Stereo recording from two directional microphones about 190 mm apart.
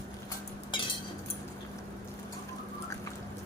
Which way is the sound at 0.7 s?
25° left (ahead or behind).